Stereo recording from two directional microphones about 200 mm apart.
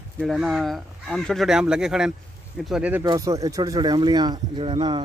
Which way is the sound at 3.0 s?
20° right (ahead or behind).